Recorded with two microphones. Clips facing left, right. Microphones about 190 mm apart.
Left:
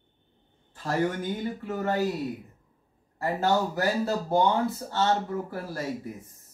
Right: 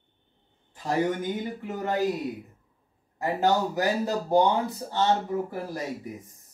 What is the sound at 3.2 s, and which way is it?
Speech, 15° right (ahead or behind).